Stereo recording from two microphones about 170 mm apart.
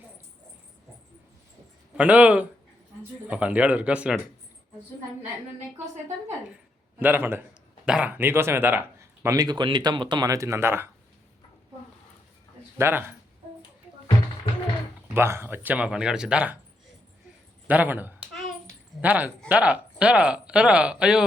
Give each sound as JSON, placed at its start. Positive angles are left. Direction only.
{"t": 2.0, "sound": "speech", "side_deg": -10}
{"t": 7.0, "sound": "speech", "side_deg": -10}
{"t": 12.7, "sound": "speech", "side_deg": -15}
{"t": 15.1, "sound": "speech", "side_deg": -15}
{"t": 17.7, "sound": "speech", "side_deg": -10}